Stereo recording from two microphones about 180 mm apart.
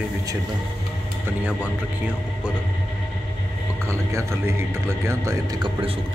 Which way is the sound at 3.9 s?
15° right (ahead or behind).